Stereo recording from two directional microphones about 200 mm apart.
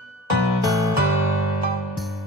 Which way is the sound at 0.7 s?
15° right (ahead or behind).